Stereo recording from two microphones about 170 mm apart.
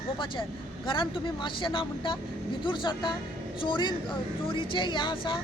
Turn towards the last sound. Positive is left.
turn(degrees=30)  # may be behind; listen again after turning